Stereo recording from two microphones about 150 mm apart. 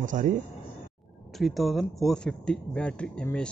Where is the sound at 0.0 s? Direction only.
60° right (ahead or behind).